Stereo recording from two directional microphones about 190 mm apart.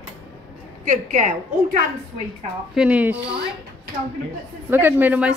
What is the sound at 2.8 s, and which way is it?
Speech, 5° right (ahead or behind).